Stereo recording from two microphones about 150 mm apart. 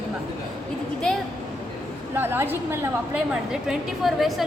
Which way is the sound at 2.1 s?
15° right (ahead or behind).